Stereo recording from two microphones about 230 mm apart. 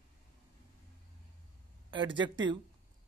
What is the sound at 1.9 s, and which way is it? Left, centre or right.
Speech, right.